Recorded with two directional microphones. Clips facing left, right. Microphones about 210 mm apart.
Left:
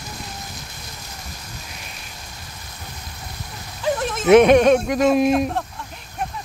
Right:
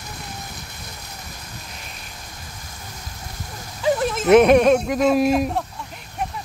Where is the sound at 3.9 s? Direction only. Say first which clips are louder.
Left 1 dB; centre (ahead or behind).